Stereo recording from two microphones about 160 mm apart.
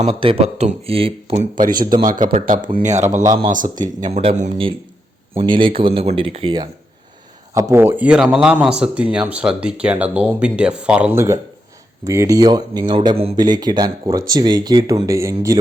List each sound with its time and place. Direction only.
0.0 s speech: 35° right (ahead or behind); by 2.2 s 60° right (ahead or behind)
2.7 s speech: 50° right (ahead or behind)
3.8 s speech: 25° right (ahead or behind)
4.3 s speech: 50° right (ahead or behind)
5.3 s speech: 35° right (ahead or behind)
7.5 s speech: 15° right (ahead or behind)